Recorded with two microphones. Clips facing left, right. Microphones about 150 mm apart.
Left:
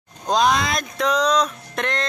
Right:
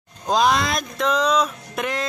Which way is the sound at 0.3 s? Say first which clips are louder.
Even; centre (ahead or behind).